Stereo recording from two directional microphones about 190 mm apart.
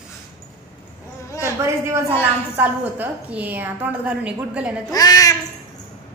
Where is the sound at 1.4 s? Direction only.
15° right (ahead or behind).